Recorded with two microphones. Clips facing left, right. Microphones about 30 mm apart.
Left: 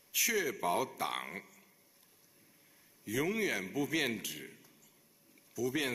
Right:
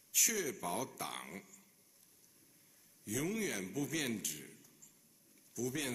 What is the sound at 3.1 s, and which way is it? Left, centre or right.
A man's voice, left.